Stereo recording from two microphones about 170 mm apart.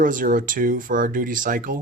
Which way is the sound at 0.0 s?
50° right (ahead or behind).